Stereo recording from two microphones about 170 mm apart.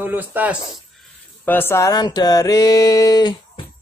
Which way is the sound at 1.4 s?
10° left (ahead or behind).